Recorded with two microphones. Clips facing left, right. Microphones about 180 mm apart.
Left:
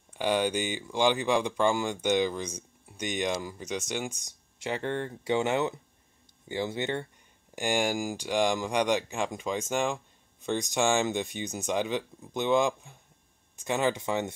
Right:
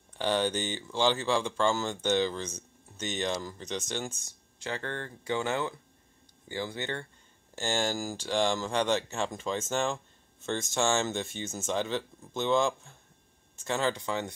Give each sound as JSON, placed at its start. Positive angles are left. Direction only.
{"t": 0.1, "sound": "speech", "side_deg": 10}